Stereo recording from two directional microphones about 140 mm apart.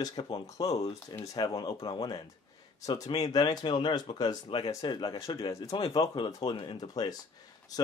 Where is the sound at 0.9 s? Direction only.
15° left (ahead or behind).